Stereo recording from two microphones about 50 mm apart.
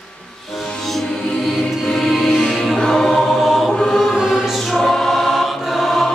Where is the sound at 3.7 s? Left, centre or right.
Centre.